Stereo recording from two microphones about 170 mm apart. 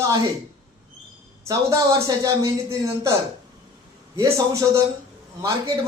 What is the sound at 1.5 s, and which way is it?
A man's voice, 20° right (ahead or behind).